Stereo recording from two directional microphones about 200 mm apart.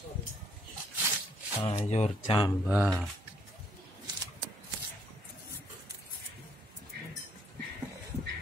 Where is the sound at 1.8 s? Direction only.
35° left (ahead or behind).